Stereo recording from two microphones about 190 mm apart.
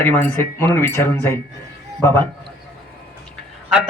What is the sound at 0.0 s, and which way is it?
Speech, 10° left (ahead or behind).